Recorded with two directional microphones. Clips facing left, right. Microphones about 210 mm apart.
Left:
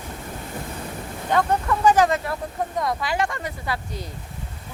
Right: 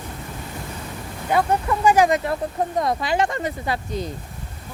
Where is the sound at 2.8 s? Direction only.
25° right (ahead or behind).